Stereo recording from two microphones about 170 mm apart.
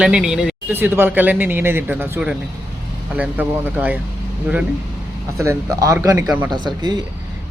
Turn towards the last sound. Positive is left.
turn(degrees=-25)  # may be behind; listen again after turning